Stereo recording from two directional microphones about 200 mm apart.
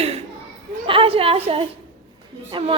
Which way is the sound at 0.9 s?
25° right (ahead or behind).